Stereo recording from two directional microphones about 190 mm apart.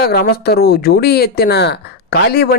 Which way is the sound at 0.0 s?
55° left (ahead or behind).